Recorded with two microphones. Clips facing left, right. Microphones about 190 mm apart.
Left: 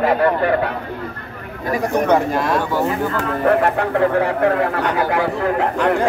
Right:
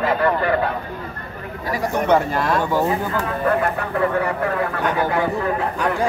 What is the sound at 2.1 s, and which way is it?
Speech, 10° left (ahead or behind).